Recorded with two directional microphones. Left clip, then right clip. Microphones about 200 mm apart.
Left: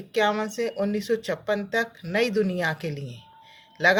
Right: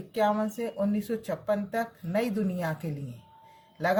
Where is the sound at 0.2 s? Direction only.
35° left (ahead or behind).